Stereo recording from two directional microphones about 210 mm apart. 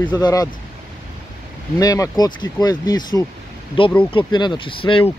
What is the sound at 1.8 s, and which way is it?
Speech, 15° left (ahead or behind).